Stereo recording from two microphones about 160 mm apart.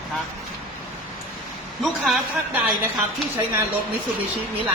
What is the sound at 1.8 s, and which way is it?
Speech, centre (ahead or behind).